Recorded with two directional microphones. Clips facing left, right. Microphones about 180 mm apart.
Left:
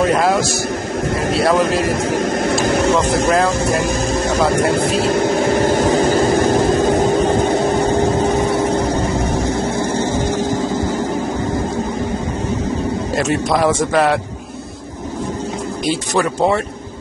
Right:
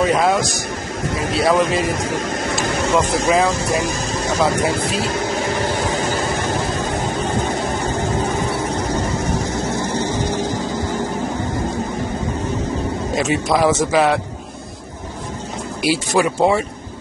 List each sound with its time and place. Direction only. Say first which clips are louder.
0.0 s a man's voice: left 1 dB; centre (ahead or behind)
1.9 s speech: left 4 dB; 55° left (ahead or behind)
3.3 s a man's voice: even; centre (ahead or behind)
3.8 s a sound: left 5 dB; 55° left (ahead or behind)
4.5 s vehicle: left 4 dB; 55° left (ahead or behind)
9.8 s vehicle: left 3 dB; 50° left (ahead or behind)
13.1 s a man's voice: even; centre (ahead or behind)
15.8 s a man's voice: right 1 dB; 10° right (ahead or behind)